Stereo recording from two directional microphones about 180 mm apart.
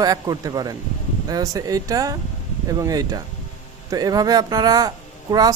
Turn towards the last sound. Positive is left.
turn(degrees=-20)  # may be behind; listen again after turning